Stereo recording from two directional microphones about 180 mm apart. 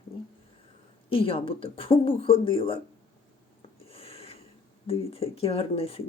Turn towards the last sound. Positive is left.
turn(degrees=30)  # may be behind; listen again after turning